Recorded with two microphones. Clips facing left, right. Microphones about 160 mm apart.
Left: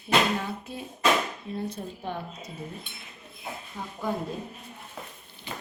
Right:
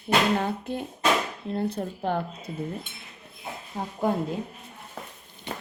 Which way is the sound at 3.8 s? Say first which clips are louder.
Right 7 dB; 35° right (ahead or behind).